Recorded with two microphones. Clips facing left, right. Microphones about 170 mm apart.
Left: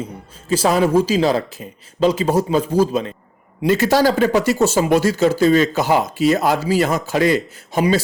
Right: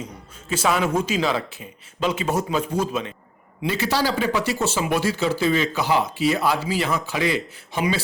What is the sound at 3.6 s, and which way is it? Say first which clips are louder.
Speech: left 8 dB; 45° left (ahead or behind).